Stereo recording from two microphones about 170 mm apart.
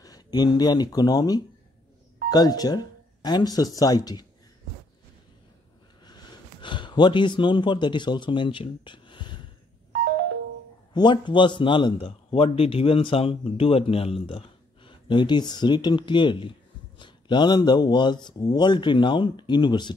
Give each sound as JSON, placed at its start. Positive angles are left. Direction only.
{"t": 0.0, "sound": "speech", "side_deg": 25}
{"t": 6.0, "sound": "a sound", "side_deg": 25}
{"t": 10.9, "sound": "a man's voice", "side_deg": 25}